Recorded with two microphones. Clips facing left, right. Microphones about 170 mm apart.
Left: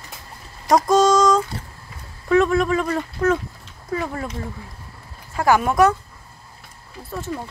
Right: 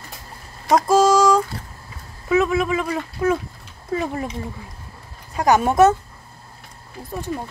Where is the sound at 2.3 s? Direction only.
5° right (ahead or behind).